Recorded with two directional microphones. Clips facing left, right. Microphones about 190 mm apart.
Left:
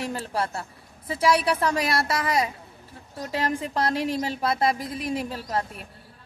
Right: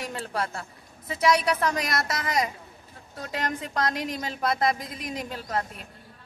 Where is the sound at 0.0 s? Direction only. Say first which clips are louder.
Left 3 dB; 30° left (ahead or behind).